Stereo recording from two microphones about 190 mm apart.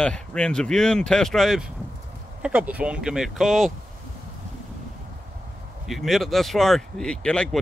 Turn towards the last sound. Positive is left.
turn(degrees=5)  # may be behind; listen again after turning